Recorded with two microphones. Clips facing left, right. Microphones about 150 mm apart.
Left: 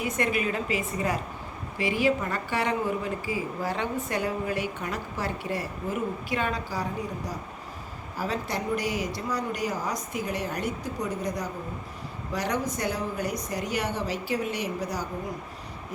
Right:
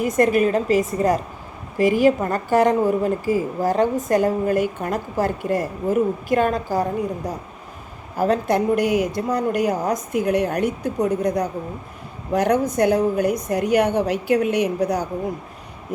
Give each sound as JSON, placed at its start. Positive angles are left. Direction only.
{"t": 0.0, "sound": "a woman's voice", "side_deg": -45}
{"t": 8.1, "sound": "speech", "side_deg": -55}